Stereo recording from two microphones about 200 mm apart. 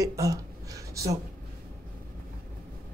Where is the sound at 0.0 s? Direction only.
15° right (ahead or behind).